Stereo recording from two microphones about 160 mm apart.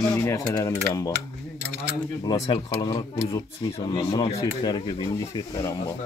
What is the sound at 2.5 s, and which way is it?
Speech, 25° left (ahead or behind).